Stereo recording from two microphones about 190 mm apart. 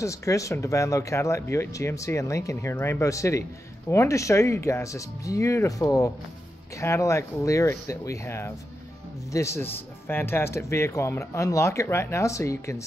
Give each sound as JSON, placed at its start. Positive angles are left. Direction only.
{"t": 0.0, "sound": "speech", "side_deg": 15}